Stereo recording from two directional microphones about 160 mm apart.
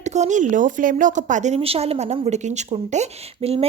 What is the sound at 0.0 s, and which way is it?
Speech, 45° right (ahead or behind).